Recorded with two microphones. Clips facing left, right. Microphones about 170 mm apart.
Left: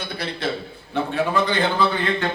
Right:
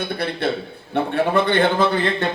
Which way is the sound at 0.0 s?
55° right (ahead or behind).